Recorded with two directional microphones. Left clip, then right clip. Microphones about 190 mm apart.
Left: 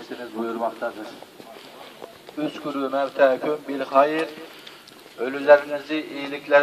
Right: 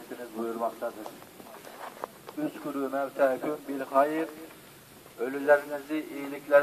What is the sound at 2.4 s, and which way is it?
A man's voice, 15° left (ahead or behind).